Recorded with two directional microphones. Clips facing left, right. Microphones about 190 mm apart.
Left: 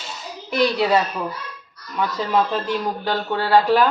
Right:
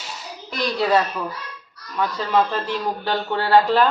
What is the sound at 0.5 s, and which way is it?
Speech, 10° left (ahead or behind).